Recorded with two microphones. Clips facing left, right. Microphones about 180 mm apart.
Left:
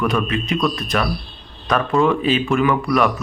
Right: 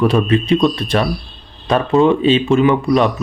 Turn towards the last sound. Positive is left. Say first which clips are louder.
# right 4 dB
turn(degrees=-25)  # may be behind; listen again after turning